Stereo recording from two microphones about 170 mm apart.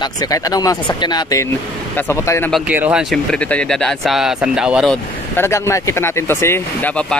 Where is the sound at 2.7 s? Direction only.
10° right (ahead or behind).